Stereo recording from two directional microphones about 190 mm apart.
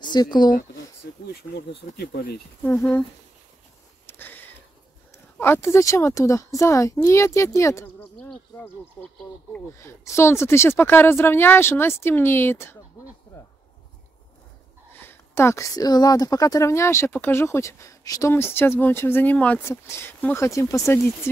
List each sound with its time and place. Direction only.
0.0 s speech: 25° left (ahead or behind)
1.2 s speech: 60° left (ahead or behind)
2.6 s speech: 10° left (ahead or behind)
4.0 s sniff: 10° left (ahead or behind)
5.1 s speech: 15° left (ahead or behind)
14.9 s speech: 10° left (ahead or behind)